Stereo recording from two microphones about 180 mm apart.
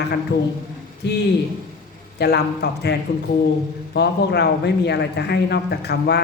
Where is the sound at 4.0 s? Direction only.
65° left (ahead or behind).